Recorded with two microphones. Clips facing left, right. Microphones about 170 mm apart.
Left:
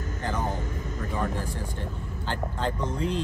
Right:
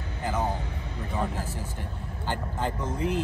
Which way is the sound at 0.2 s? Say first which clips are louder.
Right 2 dB; 10° right (ahead or behind).